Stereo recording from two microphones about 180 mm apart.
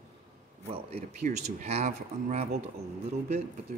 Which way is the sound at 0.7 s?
35° right (ahead or behind).